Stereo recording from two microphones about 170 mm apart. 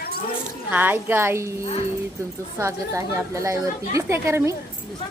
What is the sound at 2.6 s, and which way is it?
Speech, 20° right (ahead or behind).